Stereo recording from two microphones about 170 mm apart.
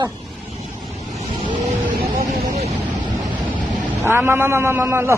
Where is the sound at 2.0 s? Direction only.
55° right (ahead or behind).